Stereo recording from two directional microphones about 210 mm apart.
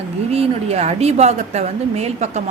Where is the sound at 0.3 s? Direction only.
30° right (ahead or behind).